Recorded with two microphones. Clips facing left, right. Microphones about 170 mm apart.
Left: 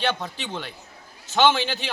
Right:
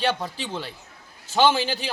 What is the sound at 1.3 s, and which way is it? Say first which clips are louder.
Speech: even; 35° right (ahead or behind).